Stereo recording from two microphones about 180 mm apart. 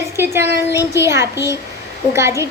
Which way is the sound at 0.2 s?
15° right (ahead or behind).